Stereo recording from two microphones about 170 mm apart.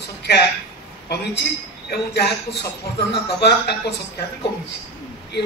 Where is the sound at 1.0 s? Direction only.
70° left (ahead or behind).